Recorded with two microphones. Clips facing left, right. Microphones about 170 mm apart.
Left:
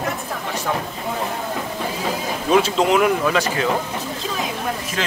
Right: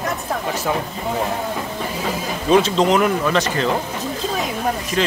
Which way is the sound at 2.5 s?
5° left (ahead or behind).